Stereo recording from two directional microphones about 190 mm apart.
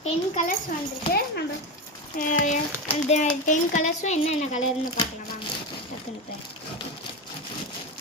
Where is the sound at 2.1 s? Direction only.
40° left (ahead or behind).